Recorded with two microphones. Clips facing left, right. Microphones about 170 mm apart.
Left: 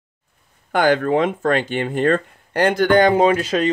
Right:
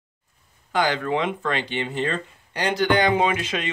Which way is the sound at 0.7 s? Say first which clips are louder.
Left 6 dB; 50° left (ahead or behind).